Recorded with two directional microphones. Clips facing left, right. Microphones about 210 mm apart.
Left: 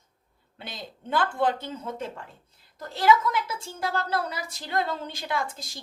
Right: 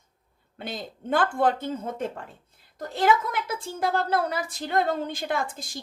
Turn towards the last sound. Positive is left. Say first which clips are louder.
# right 2 dB
turn(degrees=-50)  # may be behind; listen again after turning